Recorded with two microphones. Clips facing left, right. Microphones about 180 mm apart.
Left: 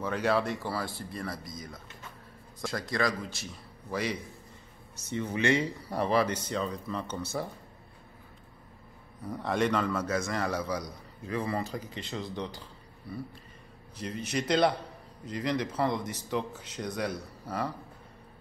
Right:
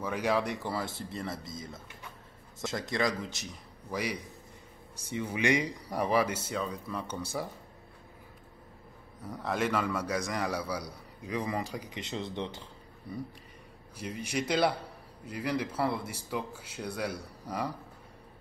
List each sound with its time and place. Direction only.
0.0 s a man's voice: 10° right (ahead or behind)
9.2 s a man's voice: centre (ahead or behind); by 12.6 s 25° right (ahead or behind)
13.9 s a man's voice: 10° right (ahead or behind)